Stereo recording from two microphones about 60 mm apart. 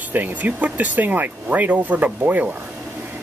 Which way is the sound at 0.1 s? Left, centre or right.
Right.